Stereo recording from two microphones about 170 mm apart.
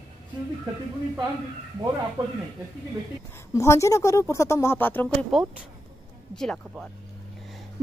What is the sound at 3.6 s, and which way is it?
Speech, 20° left (ahead or behind).